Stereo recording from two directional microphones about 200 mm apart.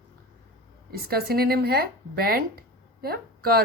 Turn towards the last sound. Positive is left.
turn(degrees=-50)  # may be behind; listen again after turning